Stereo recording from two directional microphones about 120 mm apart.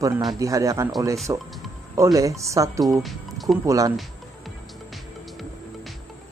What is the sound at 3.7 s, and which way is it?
Speech, 30° right (ahead or behind).